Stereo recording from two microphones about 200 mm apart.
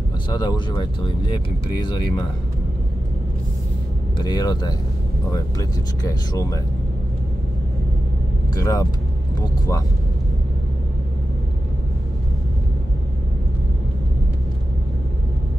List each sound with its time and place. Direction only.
0.3 s speech: 20° left (ahead or behind)
4.2 s speech: 20° left (ahead or behind)
8.5 s speech: 20° left (ahead or behind)